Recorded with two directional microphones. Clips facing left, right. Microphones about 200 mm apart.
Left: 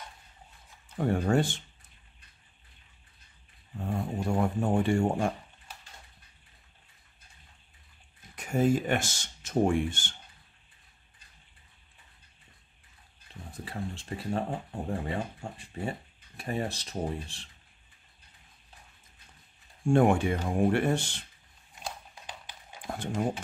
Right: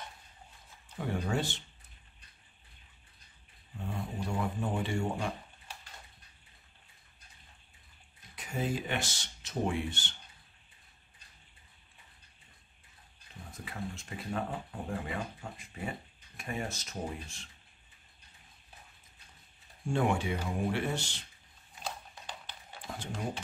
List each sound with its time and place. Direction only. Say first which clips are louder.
0.9 s speech: left 7 dB; 50° left (ahead or behind)
3.7 s speech: left 6 dB; 50° left (ahead or behind)
8.4 s speech: left 9 dB; 50° left (ahead or behind)
13.5 s speech: left 4 dB; 35° left (ahead or behind)
19.9 s speech: left 7 dB; 50° left (ahead or behind)
22.2 s a sound: left 1 dB; 15° left (ahead or behind)